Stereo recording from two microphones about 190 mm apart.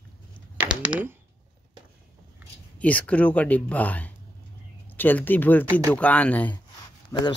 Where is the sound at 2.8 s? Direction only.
10° left (ahead or behind).